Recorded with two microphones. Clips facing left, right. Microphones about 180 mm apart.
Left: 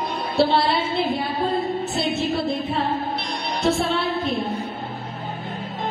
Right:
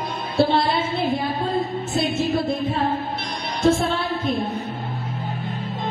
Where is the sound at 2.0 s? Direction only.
45° right (ahead or behind).